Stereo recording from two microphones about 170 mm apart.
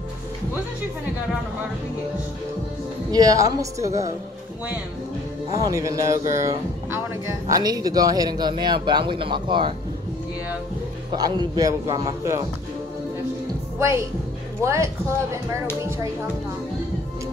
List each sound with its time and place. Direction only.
3.1 s speech: 20° right (ahead or behind)
5.7 s speech: 20° right (ahead or behind)
11.1 s speech: 25° right (ahead or behind)
13.7 s a woman's voice: 15° right (ahead or behind)